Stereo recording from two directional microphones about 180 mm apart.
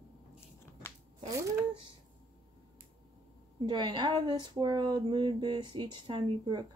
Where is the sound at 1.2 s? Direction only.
20° right (ahead or behind).